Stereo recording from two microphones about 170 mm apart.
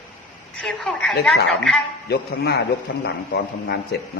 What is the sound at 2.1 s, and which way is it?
A man's voice, 70° left (ahead or behind).